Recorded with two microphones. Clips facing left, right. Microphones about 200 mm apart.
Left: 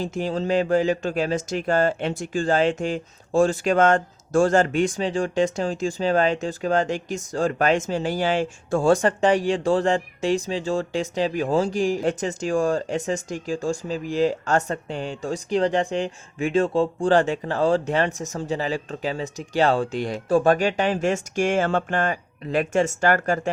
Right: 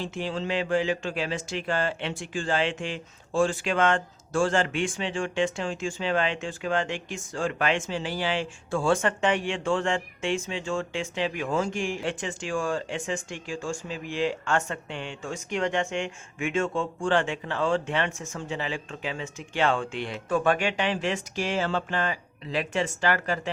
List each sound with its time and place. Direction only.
0.0 s speech: 40° left (ahead or behind)